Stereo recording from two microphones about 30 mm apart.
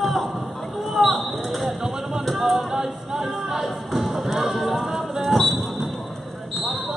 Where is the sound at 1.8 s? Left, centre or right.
Centre.